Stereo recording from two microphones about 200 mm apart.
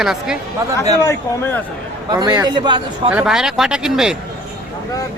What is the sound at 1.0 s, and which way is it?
Speech, 15° left (ahead or behind).